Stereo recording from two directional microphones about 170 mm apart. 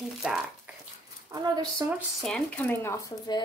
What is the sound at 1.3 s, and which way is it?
Speech, 20° right (ahead or behind).